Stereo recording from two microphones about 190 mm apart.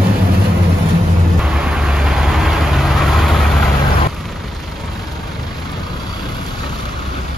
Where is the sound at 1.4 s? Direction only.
Centre (ahead or behind).